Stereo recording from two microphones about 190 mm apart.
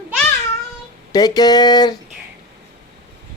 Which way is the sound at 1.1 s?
20° left (ahead or behind).